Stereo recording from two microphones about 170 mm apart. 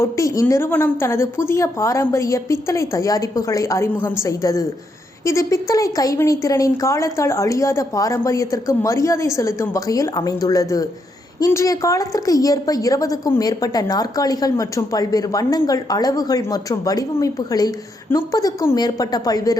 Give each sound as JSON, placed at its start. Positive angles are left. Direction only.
{"t": 0.0, "sound": "a woman's voice", "side_deg": 20}